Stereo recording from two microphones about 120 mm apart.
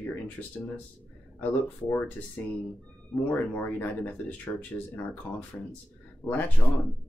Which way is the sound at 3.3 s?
15° left (ahead or behind).